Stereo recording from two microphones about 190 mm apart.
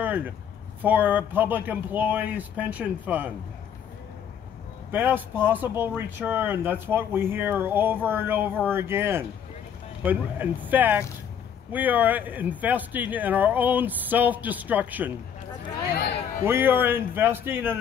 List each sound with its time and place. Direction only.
0.0 s a sound: 10° right (ahead or behind)
0.8 s speech: 10° right (ahead or behind)
4.9 s speech: 10° right (ahead or behind)
15.9 s speech: 60° left (ahead or behind)
16.4 s speech: 10° right (ahead or behind)